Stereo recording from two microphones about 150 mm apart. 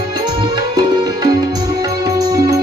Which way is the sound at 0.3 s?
30° right (ahead or behind).